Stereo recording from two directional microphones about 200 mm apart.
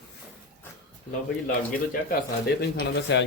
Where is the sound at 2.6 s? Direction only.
55° left (ahead or behind).